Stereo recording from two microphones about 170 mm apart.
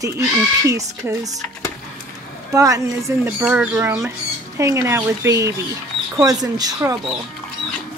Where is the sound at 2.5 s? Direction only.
20° right (ahead or behind).